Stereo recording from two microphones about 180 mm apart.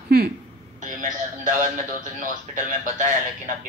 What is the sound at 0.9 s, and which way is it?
Speech, 45° right (ahead or behind).